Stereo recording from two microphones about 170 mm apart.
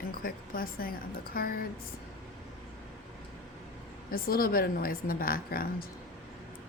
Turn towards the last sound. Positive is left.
turn(degrees=60)  # may be behind; listen again after turning